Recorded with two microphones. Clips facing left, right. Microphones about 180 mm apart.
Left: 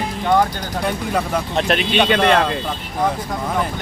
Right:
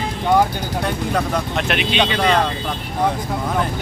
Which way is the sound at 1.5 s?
35° left (ahead or behind).